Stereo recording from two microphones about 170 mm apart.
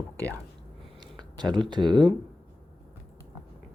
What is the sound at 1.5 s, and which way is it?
Speech, 25° right (ahead or behind).